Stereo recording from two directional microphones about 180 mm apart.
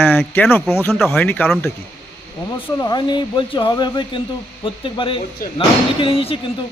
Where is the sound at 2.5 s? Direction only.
25° left (ahead or behind).